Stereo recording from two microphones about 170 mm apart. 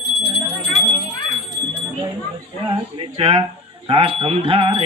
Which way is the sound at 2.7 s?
35° right (ahead or behind).